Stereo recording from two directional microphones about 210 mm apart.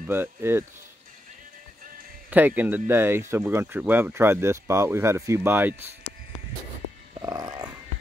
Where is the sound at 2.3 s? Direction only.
10° right (ahead or behind).